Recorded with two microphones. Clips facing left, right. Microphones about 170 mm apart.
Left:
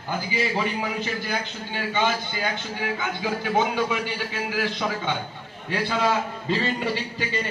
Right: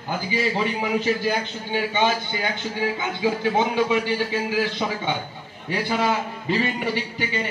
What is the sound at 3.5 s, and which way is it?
Speech, 20° right (ahead or behind).